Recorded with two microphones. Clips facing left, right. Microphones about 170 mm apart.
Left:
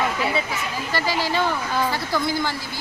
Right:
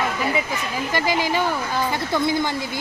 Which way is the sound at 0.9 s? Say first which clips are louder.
Right 1 dB; 15° right (ahead or behind).